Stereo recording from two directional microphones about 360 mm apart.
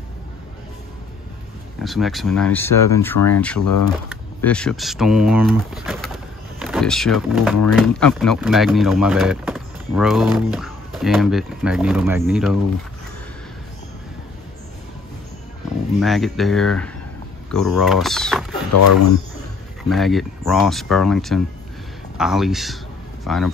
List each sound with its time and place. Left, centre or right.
1.8 s speech: centre
3.6 s speech: left
4.1 s speech: centre
16.0 s speech: centre
18.7 s speech: left
19.9 s speech: centre